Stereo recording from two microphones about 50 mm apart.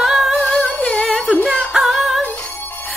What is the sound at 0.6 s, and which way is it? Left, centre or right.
Music, centre.